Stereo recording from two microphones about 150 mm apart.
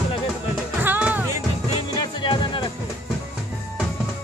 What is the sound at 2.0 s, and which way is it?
Music, 30° left (ahead or behind).